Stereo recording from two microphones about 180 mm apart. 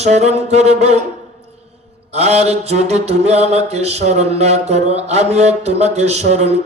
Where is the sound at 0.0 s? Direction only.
40° right (ahead or behind).